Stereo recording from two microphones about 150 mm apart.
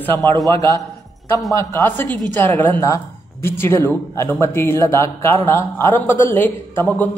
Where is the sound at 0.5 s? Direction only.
20° left (ahead or behind).